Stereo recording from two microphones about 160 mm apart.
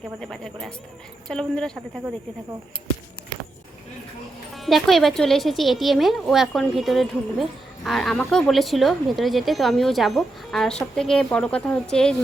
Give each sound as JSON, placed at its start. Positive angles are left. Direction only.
{"t": 0.2, "sound": "a woman's voice", "side_deg": 5}
{"t": 4.5, "sound": "a woman's voice", "side_deg": 0}